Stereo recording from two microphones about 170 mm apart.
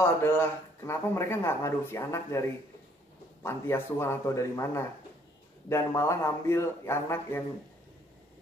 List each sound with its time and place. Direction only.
0.0 s speech: 15° left (ahead or behind)
3.4 s speech: 15° left (ahead or behind)